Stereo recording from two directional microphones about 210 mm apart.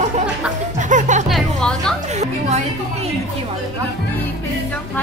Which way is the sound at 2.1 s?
30° right (ahead or behind).